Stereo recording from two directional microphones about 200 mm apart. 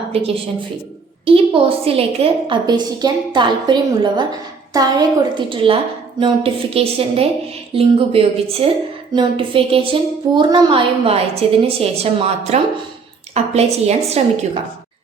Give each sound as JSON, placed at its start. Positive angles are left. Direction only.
{"t": 0.1, "sound": "a woman's voice", "side_deg": -30}